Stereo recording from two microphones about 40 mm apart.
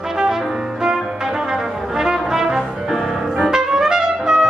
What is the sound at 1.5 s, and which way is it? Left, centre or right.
Brass instrument, centre.